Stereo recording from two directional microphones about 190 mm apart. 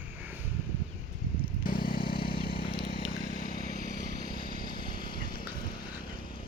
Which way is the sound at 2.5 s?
25° left (ahead or behind).